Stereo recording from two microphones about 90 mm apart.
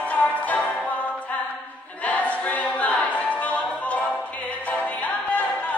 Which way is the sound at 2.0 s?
15° left (ahead or behind).